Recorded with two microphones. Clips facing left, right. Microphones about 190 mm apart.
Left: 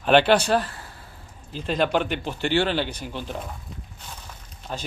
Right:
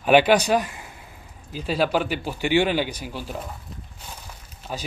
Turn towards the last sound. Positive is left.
turn(degrees=-5)  # may be behind; listen again after turning